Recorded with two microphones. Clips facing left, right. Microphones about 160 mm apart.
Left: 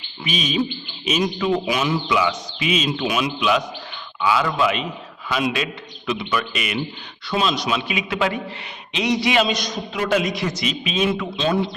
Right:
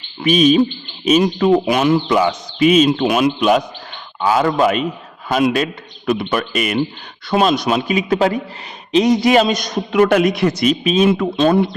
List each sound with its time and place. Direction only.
0.2 s a man's voice: 50° right (ahead or behind)